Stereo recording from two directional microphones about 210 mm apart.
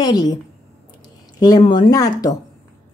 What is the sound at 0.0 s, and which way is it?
Speech, 20° left (ahead or behind).